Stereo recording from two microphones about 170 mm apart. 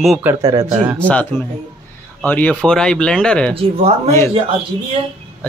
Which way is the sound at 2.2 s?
10° left (ahead or behind).